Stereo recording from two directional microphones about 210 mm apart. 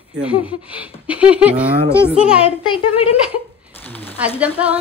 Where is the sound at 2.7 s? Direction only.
25° left (ahead or behind).